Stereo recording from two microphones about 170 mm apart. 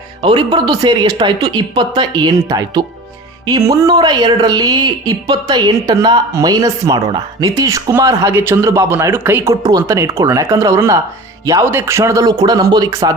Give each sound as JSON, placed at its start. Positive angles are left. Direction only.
{"t": 0.2, "sound": "speech", "side_deg": -30}